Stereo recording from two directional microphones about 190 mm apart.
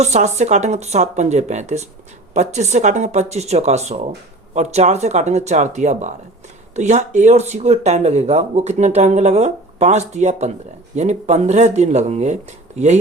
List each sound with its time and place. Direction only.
0.0 s speech: 35° right (ahead or behind)